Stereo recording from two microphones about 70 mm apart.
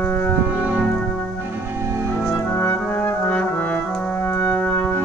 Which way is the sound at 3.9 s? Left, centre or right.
Centre.